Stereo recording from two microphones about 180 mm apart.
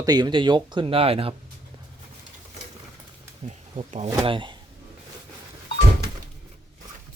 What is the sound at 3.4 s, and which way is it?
Speech, 40° right (ahead or behind).